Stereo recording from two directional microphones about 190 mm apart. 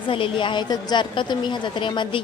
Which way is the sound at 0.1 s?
25° left (ahead or behind).